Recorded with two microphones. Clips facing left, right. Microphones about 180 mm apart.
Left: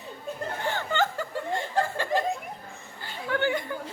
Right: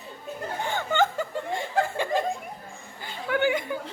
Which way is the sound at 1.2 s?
15° right (ahead or behind).